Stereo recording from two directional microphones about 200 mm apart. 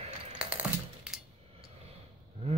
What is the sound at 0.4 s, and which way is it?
Coin, 5° right (ahead or behind).